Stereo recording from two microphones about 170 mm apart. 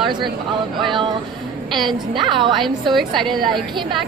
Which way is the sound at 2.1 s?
30° right (ahead or behind).